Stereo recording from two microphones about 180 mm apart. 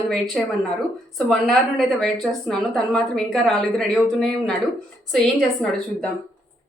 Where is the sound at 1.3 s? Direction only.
Centre (ahead or behind).